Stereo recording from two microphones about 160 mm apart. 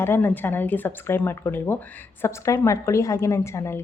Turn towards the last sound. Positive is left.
turn(degrees=15)  # may be behind; listen again after turning